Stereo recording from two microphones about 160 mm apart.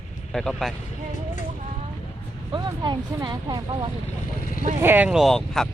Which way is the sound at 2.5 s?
25° right (ahead or behind).